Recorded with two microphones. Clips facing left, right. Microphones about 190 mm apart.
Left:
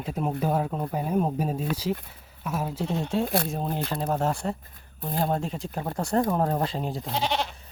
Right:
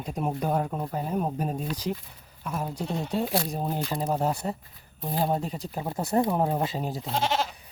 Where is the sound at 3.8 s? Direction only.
15° right (ahead or behind).